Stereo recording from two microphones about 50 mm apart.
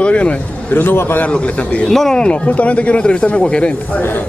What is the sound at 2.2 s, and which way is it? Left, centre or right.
A man's voice, left.